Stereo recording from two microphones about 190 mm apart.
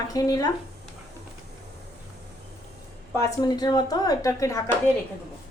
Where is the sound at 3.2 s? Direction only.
20° left (ahead or behind).